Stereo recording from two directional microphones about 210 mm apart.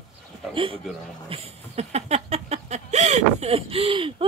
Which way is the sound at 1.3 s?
30° right (ahead or behind).